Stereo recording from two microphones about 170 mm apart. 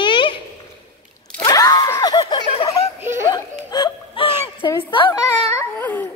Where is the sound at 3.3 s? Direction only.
25° left (ahead or behind).